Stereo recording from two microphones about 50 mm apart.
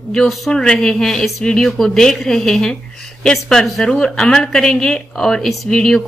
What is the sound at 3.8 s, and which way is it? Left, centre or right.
Speech, centre.